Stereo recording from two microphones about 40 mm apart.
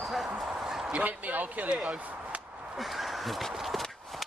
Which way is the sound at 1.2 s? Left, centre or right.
Right.